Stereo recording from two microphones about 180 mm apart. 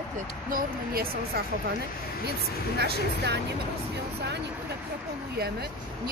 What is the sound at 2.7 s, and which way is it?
Speech, 65° right (ahead or behind).